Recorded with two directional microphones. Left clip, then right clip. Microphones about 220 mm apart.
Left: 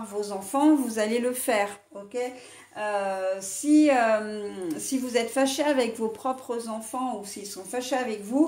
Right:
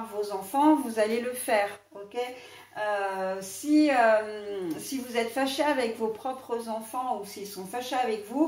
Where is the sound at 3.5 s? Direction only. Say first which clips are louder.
Left 2 dB; 50° left (ahead or behind).